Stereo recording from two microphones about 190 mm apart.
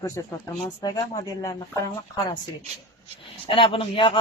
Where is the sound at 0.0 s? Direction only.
15° left (ahead or behind).